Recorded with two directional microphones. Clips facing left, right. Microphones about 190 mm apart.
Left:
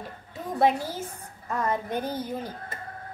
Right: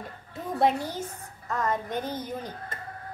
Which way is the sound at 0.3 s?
Centre (ahead or behind).